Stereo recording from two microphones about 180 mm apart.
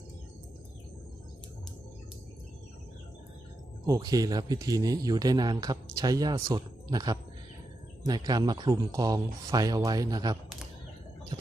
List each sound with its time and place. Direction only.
3.8 s speech: 20° right (ahead or behind)